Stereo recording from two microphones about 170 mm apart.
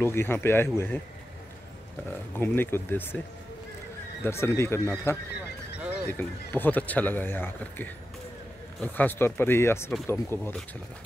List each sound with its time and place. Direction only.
0.0 s speech: 15° left (ahead or behind)
2.3 s speech: 10° left (ahead or behind)
4.2 s speech: 15° left (ahead or behind)